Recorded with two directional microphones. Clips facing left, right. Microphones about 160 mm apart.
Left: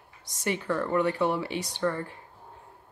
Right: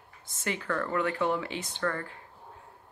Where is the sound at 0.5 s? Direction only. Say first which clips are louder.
Left 4 dB; 15° left (ahead or behind).